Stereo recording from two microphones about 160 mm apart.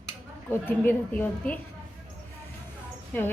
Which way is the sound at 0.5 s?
15° left (ahead or behind).